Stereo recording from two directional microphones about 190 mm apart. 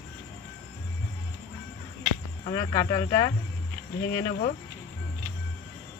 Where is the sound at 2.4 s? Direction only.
25° left (ahead or behind).